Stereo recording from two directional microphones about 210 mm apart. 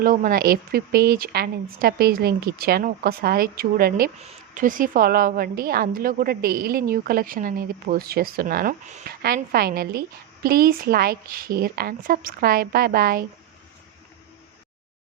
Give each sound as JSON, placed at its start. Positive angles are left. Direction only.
{"t": 0.0, "sound": "a woman's voice", "side_deg": -45}